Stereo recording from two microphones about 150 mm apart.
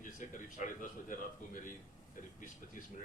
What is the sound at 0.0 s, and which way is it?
A man's voice, 60° left (ahead or behind).